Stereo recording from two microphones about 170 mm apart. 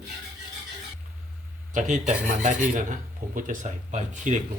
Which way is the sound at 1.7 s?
45° right (ahead or behind).